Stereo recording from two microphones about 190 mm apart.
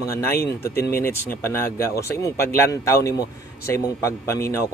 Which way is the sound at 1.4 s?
15° left (ahead or behind).